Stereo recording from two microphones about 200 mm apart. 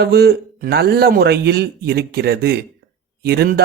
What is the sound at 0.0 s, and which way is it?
A man's voice, 55° right (ahead or behind).